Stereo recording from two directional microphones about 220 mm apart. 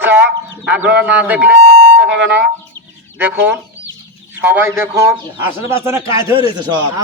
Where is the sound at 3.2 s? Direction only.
5° right (ahead or behind).